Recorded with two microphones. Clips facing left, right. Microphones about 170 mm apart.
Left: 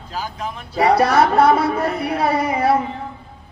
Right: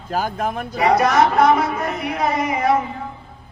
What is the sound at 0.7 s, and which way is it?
A man's voice, 30° left (ahead or behind).